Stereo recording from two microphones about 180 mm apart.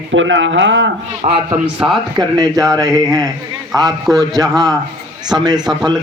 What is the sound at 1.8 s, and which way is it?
Speech, 10° right (ahead or behind).